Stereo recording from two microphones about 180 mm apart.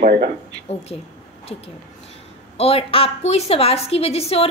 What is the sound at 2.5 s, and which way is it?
A woman's voice, 35° left (ahead or behind).